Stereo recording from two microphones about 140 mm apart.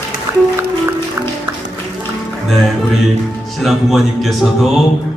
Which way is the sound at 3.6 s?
Centre (ahead or behind).